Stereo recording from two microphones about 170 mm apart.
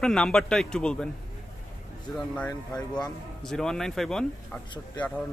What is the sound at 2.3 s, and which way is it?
Speech, 5° left (ahead or behind).